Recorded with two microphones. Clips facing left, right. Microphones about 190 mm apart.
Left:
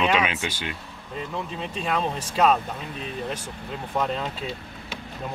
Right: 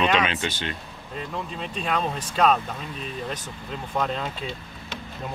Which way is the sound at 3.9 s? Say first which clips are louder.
Left 1 dB; centre (ahead or behind).